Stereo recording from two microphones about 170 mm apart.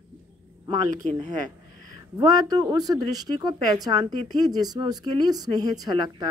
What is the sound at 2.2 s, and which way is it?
A woman's voice, 20° right (ahead or behind).